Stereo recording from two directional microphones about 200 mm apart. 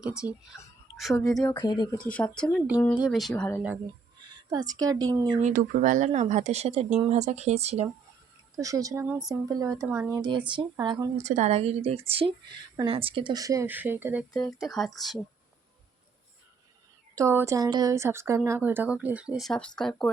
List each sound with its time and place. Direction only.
0.3 s speech: centre (ahead or behind)
1.5 s speech: 15° left (ahead or behind)
2.0 s speech: 5° left (ahead or behind)
4.5 s speech: 20° right (ahead or behind)
5.4 s speech: 40° right (ahead or behind)
8.5 s speech: 15° right (ahead or behind)
11.2 s speech: 35° right (ahead or behind); by 15.2 s centre (ahead or behind)
17.2 s speech: 15° right (ahead or behind); by 20.1 s 5° left (ahead or behind)